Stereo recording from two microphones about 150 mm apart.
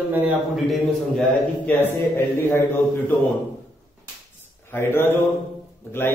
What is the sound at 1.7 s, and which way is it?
Speech, 15° left (ahead or behind).